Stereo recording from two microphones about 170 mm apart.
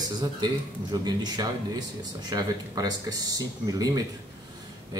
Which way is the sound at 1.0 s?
25° right (ahead or behind).